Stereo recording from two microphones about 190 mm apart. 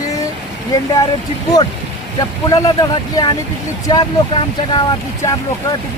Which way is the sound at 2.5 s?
20° left (ahead or behind).